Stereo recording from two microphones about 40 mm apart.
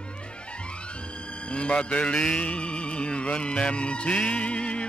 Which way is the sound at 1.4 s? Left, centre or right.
Left.